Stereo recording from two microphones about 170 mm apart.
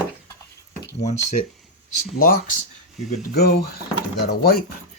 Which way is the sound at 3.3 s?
70° left (ahead or behind).